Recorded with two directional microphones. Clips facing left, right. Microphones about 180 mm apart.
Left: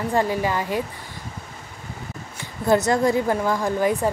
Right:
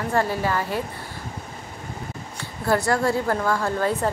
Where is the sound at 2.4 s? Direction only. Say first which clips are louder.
Left 3 dB; 20° left (ahead or behind).